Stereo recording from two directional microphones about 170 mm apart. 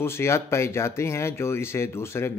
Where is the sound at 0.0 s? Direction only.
15° left (ahead or behind).